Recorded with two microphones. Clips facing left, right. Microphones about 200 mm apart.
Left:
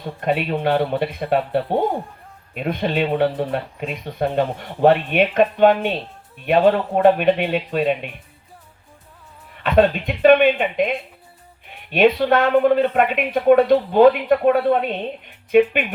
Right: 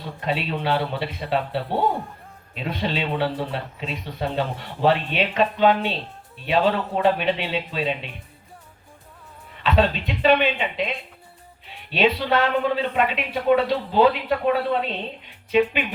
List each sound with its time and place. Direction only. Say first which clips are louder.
0.0 s speech: left 5 dB; 50° left (ahead or behind)
9.6 s speech: left 5 dB; 55° left (ahead or behind)